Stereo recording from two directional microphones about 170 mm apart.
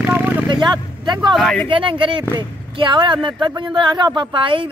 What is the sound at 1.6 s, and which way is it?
Speech, 30° right (ahead or behind).